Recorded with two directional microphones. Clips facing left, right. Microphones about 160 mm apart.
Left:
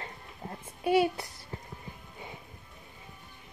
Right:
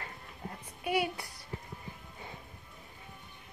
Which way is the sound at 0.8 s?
25° left (ahead or behind).